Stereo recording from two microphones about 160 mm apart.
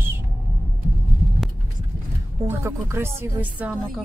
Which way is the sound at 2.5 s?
15° right (ahead or behind).